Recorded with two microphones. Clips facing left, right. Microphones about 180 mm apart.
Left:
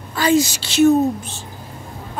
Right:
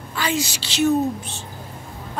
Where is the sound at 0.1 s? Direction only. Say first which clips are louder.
Left 8 dB; 45° left (ahead or behind).